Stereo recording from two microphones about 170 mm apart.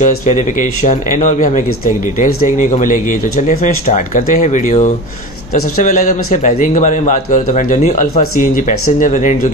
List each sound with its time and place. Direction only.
0.0 s speech: 50° left (ahead or behind)